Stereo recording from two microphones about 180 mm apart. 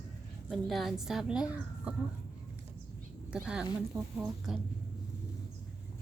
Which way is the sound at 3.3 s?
10° right (ahead or behind).